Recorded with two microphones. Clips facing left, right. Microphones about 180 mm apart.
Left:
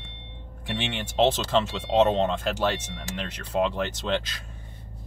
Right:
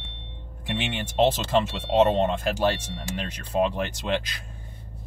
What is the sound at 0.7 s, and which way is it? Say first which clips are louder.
Speech: right 1 dB; 10° right (ahead or behind).